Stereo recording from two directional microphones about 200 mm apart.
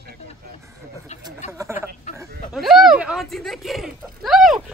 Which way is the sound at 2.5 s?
Centre (ahead or behind).